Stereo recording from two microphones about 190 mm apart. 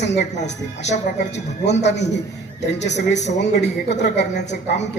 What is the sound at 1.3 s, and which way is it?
A man's voice, 65° left (ahead or behind).